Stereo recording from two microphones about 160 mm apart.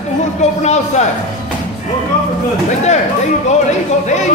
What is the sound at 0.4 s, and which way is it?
Speech, 45° left (ahead or behind).